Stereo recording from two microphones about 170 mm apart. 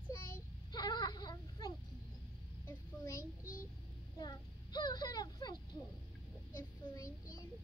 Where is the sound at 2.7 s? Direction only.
15° left (ahead or behind).